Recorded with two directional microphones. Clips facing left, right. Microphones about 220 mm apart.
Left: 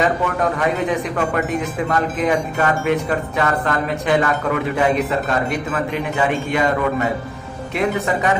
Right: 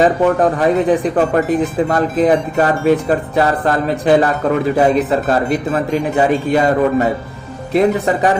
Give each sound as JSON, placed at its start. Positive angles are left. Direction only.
{"t": 0.0, "sound": "speech", "side_deg": -35}